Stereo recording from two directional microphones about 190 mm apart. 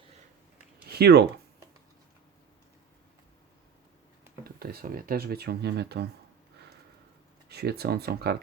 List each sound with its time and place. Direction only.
0.9 s a sound: 60° right (ahead or behind)
4.6 s speech: 50° right (ahead or behind)
7.5 s speech: 60° right (ahead or behind)